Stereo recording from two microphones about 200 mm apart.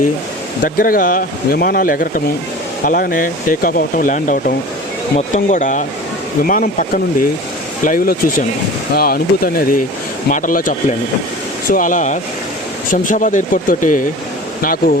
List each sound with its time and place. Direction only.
0.6 s speech: 45° left (ahead or behind)